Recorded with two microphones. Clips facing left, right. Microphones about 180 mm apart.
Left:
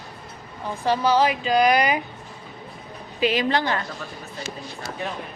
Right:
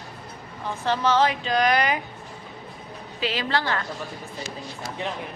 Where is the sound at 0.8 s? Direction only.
10° left (ahead or behind).